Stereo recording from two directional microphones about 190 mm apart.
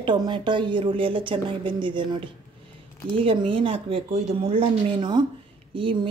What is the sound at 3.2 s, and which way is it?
Speech, 25° right (ahead or behind).